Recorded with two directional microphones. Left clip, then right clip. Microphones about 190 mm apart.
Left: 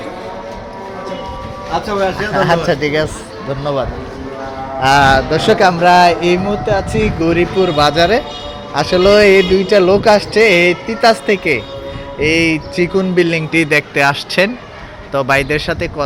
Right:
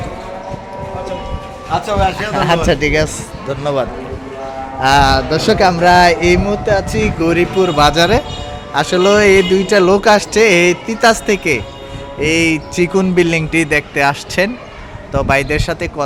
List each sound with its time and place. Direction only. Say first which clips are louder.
1.7 s a man's voice: right 1 dB; 20° right (ahead or behind); by 3.8 s 35° right (ahead or behind)
4.8 s speech: left 1 dB; 15° right (ahead or behind)